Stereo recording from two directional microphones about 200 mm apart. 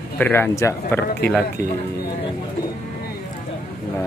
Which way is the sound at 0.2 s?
10° left (ahead or behind).